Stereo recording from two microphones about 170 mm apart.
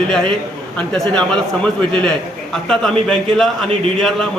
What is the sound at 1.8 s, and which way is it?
Speech, 30° right (ahead or behind).